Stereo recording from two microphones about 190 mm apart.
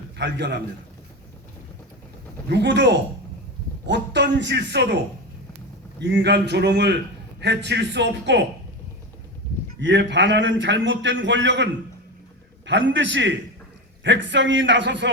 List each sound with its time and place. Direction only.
0.2 s a man's voice: 65° right (ahead or behind)
2.5 s a man's voice: 65° right (ahead or behind)
6.0 s a man's voice: 65° right (ahead or behind)
9.8 s a man's voice: 70° right (ahead or behind)